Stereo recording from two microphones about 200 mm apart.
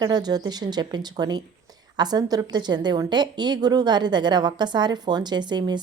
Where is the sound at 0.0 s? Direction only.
20° right (ahead or behind).